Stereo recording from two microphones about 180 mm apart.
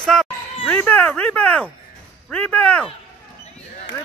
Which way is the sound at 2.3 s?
5° left (ahead or behind).